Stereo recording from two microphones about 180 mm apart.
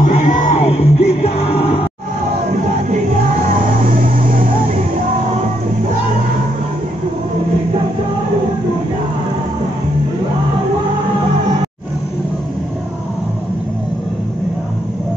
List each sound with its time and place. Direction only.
0.0 s music: 45° left (ahead or behind)
4.0 s vehicle: 50° right (ahead or behind)